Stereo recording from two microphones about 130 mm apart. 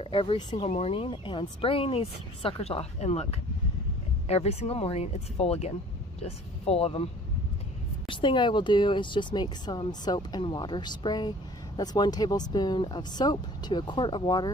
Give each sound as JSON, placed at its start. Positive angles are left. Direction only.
{"t": 0.0, "sound": "speech", "side_deg": 45}
{"t": 0.7, "sound": "speech", "side_deg": 50}
{"t": 8.1, "sound": "speech", "side_deg": 40}